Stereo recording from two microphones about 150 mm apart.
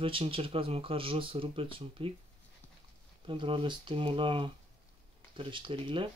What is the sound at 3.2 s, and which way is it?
Speech, 35° right (ahead or behind).